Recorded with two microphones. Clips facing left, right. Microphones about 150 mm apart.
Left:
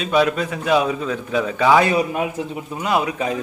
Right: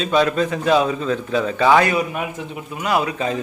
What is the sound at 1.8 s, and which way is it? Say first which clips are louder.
Speech: left 2 dB; 25° left (ahead or behind).